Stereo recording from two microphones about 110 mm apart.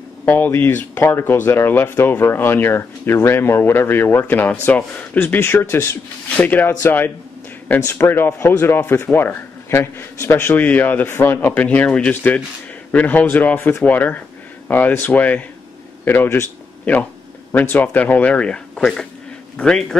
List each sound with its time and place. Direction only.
0.2 s speech: 15° left (ahead or behind)